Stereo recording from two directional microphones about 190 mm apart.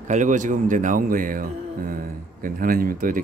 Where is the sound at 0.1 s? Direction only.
40° right (ahead or behind).